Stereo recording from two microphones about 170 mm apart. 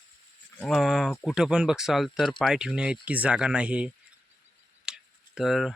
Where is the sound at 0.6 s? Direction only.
Centre (ahead or behind).